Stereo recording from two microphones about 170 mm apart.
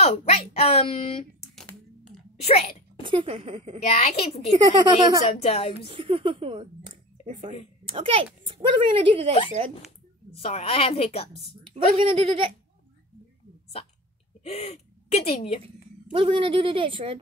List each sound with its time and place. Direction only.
0.0 s speech: 40° left (ahead or behind)
3.0 s speech: 30° right (ahead or behind)
3.8 s speech: 40° left (ahead or behind)
4.5 s speech: 30° right (ahead or behind)
5.4 s speech: 35° left (ahead or behind)
5.9 s speech: 30° right (ahead or behind)
10.4 s speech: 35° left (ahead or behind)
11.6 s speech: 30° right (ahead or behind)
14.4 s speech: 40° left (ahead or behind)
15.6 s speech: 30° right (ahead or behind)